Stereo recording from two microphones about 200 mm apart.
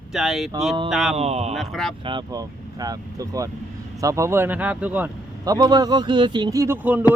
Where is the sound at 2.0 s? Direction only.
20° right (ahead or behind).